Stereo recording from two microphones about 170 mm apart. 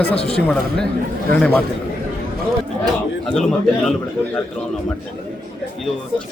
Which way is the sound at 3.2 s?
Centre (ahead or behind).